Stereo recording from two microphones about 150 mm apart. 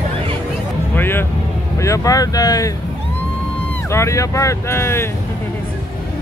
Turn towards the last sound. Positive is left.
turn(degrees=15)  # may be behind; listen again after turning